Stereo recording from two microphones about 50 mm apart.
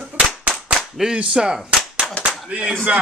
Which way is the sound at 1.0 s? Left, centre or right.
Centre.